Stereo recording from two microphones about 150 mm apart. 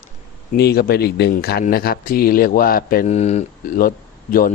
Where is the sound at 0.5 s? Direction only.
90° left.